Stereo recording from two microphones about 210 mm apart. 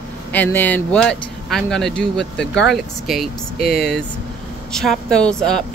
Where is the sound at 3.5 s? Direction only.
50° left (ahead or behind).